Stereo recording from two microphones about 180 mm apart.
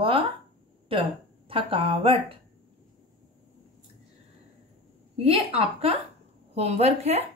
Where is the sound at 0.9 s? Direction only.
30° right (ahead or behind).